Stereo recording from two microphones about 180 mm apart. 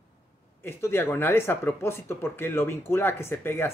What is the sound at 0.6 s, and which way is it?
Speech, 15° left (ahead or behind).